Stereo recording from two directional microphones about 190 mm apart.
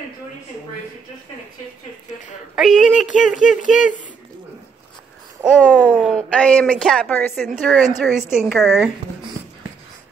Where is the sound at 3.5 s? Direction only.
45° left (ahead or behind).